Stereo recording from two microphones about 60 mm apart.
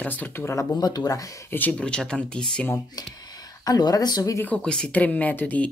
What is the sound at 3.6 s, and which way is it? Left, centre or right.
Speech, left.